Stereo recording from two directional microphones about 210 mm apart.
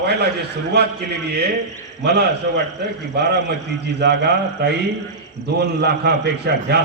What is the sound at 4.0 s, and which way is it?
Speech, 50° right (ahead or behind).